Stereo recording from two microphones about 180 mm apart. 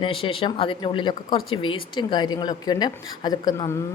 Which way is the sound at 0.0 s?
30° left (ahead or behind).